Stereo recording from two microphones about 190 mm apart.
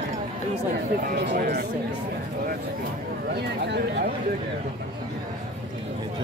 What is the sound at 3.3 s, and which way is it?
Speech, 60° right (ahead or behind).